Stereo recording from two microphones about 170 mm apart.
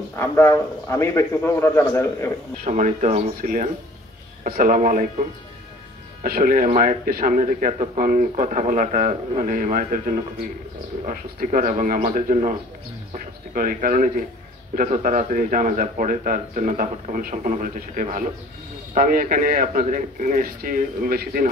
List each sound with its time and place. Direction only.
0.1 s a man's voice: 15° left (ahead or behind)
2.6 s speech: 45° right (ahead or behind)
6.2 s speech: 60° right (ahead or behind)